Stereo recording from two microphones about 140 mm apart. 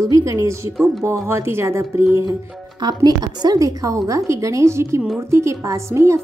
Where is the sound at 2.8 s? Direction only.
30° right (ahead or behind).